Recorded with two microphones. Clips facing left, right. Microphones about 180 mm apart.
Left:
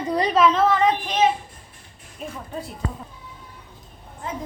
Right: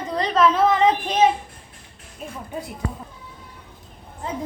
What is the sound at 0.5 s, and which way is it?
Speech, 15° right (ahead or behind).